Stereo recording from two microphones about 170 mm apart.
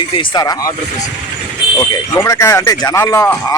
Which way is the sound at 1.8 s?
15° left (ahead or behind).